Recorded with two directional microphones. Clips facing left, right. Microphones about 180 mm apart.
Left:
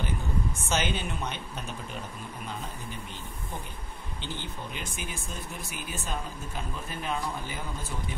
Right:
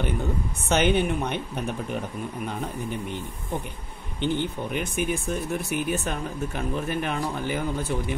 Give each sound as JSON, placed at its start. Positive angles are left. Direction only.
{"t": 0.7, "sound": "speech", "side_deg": -60}
{"t": 4.2, "sound": "speech", "side_deg": -60}